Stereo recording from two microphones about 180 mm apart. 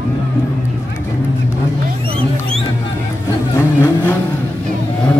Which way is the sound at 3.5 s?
15° left (ahead or behind).